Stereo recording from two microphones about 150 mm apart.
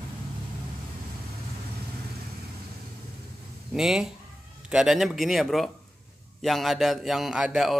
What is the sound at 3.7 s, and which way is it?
A man's voice, 5° right (ahead or behind).